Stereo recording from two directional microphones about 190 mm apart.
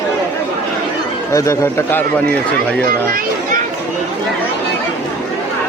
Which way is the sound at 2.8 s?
50° right (ahead or behind).